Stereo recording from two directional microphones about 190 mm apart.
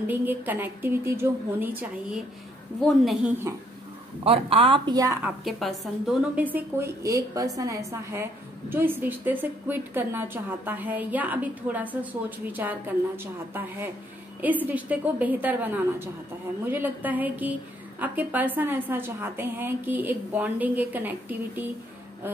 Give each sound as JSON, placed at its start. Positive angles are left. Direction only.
{"t": 0.0, "sound": "a woman's voice", "side_deg": -10}
{"t": 3.5, "sound": "a woman's voice", "side_deg": -15}
{"t": 4.2, "sound": "speech", "side_deg": -30}
{"t": 5.2, "sound": "a woman's voice", "side_deg": 0}